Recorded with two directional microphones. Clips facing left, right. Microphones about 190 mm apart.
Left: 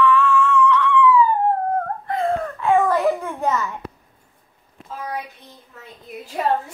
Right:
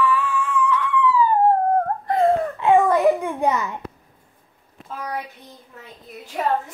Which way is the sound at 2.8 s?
5° right (ahead or behind).